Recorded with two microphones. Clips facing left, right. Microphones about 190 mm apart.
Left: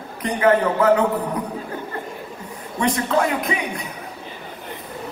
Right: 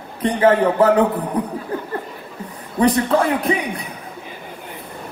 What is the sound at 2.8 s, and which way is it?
A man's voice, 35° right (ahead or behind).